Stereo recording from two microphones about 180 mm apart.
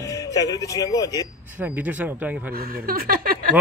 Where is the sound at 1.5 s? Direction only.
10° right (ahead or behind).